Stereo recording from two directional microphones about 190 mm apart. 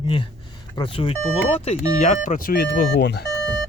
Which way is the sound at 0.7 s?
25° left (ahead or behind).